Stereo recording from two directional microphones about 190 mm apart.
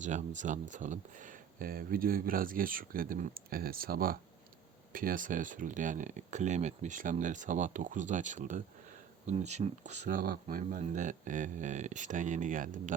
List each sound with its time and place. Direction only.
0.0 s speech: 40° right (ahead or behind)